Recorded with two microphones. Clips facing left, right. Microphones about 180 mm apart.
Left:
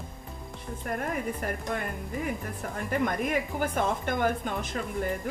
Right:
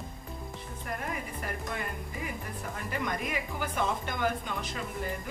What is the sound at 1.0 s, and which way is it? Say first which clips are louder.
A woman's voice: left 6 dB; 50° left (ahead or behind).